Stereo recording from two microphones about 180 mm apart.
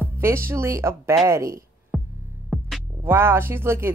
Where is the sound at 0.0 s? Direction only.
15° right (ahead or behind).